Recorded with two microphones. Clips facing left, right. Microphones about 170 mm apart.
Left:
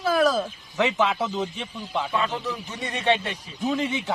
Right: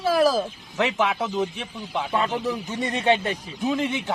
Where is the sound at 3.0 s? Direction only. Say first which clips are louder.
Right 2 dB; 40° right (ahead or behind).